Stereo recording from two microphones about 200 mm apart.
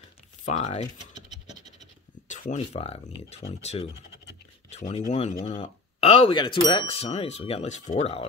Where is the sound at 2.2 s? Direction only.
35° left (ahead or behind).